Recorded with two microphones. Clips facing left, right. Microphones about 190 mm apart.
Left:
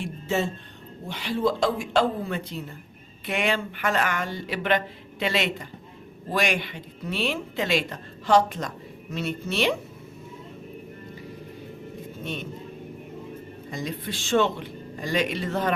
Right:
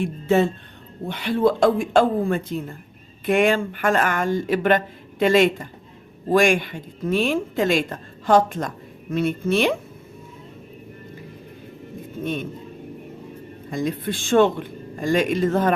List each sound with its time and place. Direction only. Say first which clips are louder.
0.0 s a woman's voice: right 8 dB; 55° right (ahead or behind)
12.2 s speech: right 8 dB; 50° right (ahead or behind)
13.7 s a woman's voice: right 8 dB; 50° right (ahead or behind)